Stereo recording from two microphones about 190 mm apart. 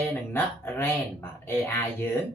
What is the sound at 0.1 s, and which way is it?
Speech, 10° left (ahead or behind).